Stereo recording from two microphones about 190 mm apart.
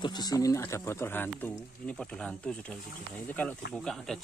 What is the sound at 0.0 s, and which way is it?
Speech, 20° left (ahead or behind).